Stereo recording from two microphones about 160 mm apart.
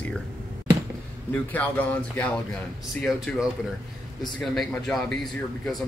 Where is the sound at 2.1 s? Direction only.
10° left (ahead or behind).